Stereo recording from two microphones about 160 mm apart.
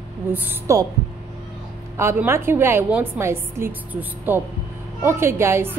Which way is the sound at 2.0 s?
15° right (ahead or behind).